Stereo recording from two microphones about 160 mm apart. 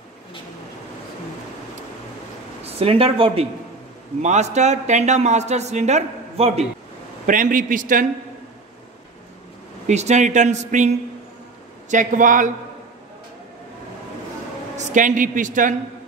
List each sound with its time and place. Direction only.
2.6 s speech: 35° right (ahead or behind)
4.2 s speech: 45° right (ahead or behind)
7.2 s a man's voice: 55° right (ahead or behind)
9.8 s speech: 45° right (ahead or behind)
14.9 s a man's voice: 55° right (ahead or behind)